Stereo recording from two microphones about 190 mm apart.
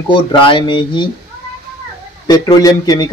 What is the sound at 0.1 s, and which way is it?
Speech, 25° left (ahead or behind).